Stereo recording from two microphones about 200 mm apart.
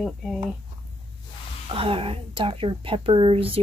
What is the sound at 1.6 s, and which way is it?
A woman's voice, 25° right (ahead or behind).